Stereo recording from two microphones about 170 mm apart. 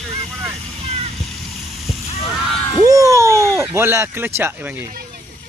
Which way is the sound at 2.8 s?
20° right (ahead or behind).